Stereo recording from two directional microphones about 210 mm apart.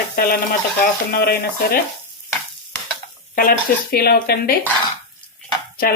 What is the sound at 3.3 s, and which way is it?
Frying, 45° left (ahead or behind).